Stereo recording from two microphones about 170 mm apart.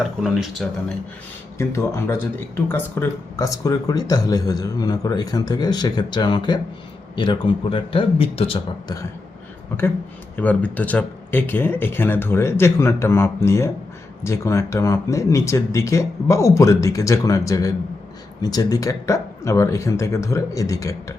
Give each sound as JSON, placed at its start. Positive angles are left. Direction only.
{"t": 0.0, "sound": "speech", "side_deg": -5}
{"t": 1.5, "sound": "a man's voice", "side_deg": 15}
{"t": 10.3, "sound": "speech", "side_deg": 10}